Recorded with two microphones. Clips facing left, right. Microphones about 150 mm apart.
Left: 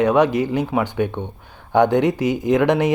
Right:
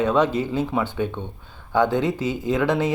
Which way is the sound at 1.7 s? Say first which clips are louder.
Left 5 dB; 15° left (ahead or behind).